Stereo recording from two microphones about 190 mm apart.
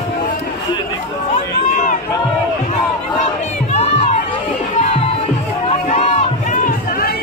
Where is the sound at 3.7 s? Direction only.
35° left (ahead or behind).